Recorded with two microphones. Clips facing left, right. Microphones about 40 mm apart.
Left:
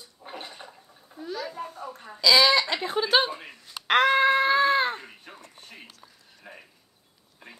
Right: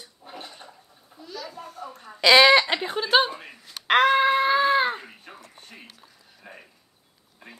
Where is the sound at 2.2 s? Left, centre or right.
Right.